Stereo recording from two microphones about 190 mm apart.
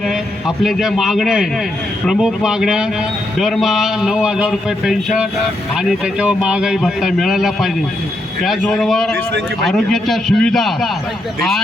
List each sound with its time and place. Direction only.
0.1 s a man's voice: centre (ahead or behind)